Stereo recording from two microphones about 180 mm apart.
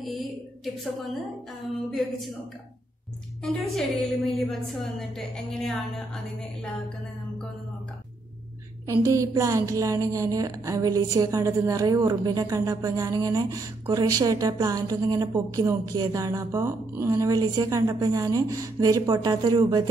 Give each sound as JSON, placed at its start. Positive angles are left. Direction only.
{"t": 1.9, "sound": "a woman's voice", "side_deg": 0}
{"t": 3.4, "sound": "a woman's voice", "side_deg": 0}
{"t": 9.0, "sound": "a woman's voice", "side_deg": -15}